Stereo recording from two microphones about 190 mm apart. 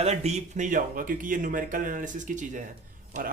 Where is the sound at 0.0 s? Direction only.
35° right (ahead or behind).